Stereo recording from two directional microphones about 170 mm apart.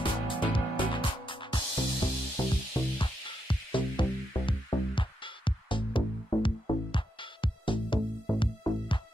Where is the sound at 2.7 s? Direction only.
30° left (ahead or behind).